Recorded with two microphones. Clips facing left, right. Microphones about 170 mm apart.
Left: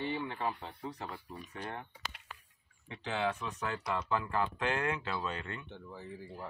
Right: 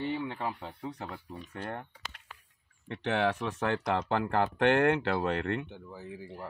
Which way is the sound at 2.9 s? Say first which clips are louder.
Right 6 dB; 70° right (ahead or behind).